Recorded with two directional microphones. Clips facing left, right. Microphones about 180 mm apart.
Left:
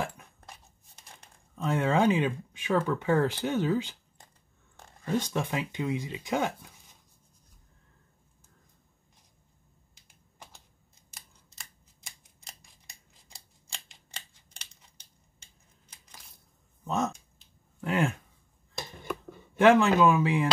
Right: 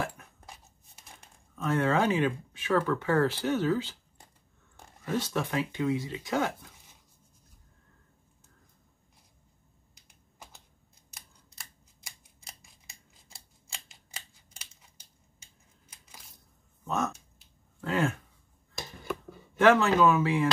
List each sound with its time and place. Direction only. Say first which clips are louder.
0.5 s a sound: even; 5° right (ahead or behind)
1.5 s speech: even; 20° left (ahead or behind)
5.0 s speech: left 1 dB; 15° left (ahead or behind)
9.9 s typing: even; centre (ahead or behind)
12.4 s scissors: even; centre (ahead or behind)
16.8 s a sound: left 1 dB; 20° left (ahead or behind)
17.7 s speech: even; 15° left (ahead or behind)
19.6 s speech: left 1 dB; 15° left (ahead or behind)